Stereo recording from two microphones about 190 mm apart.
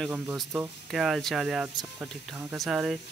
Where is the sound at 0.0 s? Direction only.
5° right (ahead or behind).